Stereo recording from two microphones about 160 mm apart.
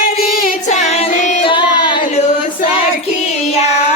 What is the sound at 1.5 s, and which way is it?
Child singing, 30° left (ahead or behind).